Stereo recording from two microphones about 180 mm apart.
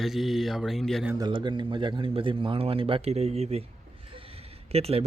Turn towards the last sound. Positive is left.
turn(degrees=-35)  # may be behind; listen again after turning